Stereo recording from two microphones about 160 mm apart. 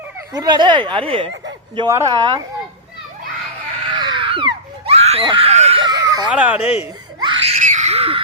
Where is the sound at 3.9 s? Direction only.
30° right (ahead or behind).